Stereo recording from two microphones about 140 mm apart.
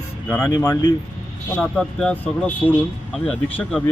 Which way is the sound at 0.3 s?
25° left (ahead or behind).